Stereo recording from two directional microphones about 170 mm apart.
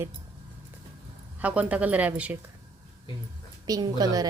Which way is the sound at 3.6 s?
20° right (ahead or behind).